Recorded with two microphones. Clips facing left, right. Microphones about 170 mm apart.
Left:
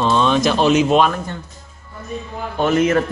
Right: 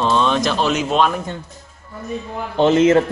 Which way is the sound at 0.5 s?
15° left (ahead or behind).